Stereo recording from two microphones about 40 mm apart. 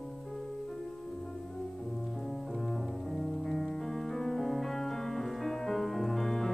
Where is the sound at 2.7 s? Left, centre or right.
Centre.